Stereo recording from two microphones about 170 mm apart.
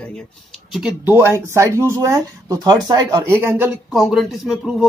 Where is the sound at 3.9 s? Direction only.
Centre (ahead or behind).